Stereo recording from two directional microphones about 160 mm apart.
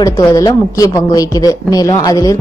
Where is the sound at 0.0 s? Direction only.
20° left (ahead or behind).